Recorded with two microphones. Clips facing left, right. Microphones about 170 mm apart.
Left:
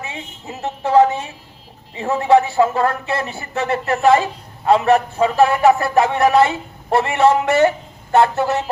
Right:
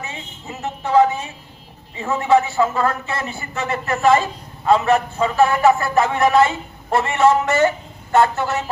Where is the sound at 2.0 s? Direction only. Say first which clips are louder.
Left 2 dB; 35° left (ahead or behind).